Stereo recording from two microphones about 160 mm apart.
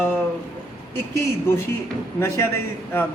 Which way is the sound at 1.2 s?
15° left (ahead or behind).